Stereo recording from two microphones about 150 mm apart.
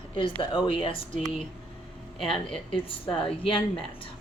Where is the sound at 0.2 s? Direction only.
35° left (ahead or behind).